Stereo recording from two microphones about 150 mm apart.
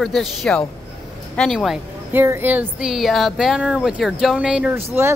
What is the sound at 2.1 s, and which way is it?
Speech, 15° right (ahead or behind).